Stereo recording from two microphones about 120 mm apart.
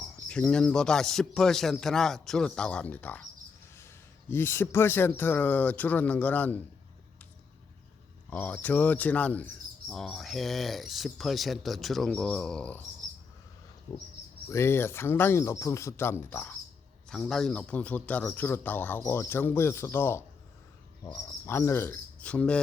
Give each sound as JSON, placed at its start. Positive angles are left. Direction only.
{"t": 0.3, "sound": "a man's voice", "side_deg": 10}
{"t": 8.3, "sound": "a man's voice", "side_deg": 15}
{"t": 14.5, "sound": "speech", "side_deg": 20}
{"t": 17.1, "sound": "speech", "side_deg": 5}
{"t": 22.2, "sound": "speech", "side_deg": 10}